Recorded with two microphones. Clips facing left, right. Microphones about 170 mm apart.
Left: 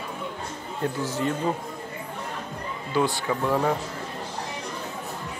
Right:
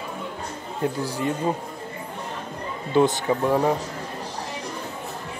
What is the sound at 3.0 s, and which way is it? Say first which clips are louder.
Speech: right 5 dB; 20° right (ahead or behind).